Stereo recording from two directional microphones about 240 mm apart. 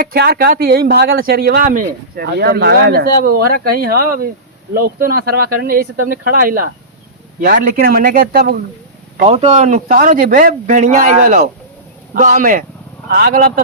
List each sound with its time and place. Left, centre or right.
0.0 s speech: right
9.2 s speech: right